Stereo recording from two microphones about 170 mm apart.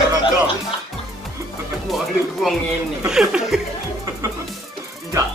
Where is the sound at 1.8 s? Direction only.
Centre (ahead or behind).